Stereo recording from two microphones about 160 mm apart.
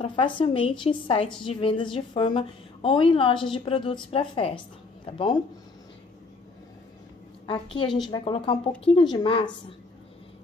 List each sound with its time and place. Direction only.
0.0 s a woman's voice: 30° left (ahead or behind)
7.4 s a woman's voice: 30° left (ahead or behind)